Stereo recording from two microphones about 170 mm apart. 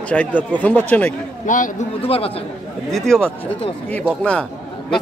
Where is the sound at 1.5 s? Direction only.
50° left (ahead or behind).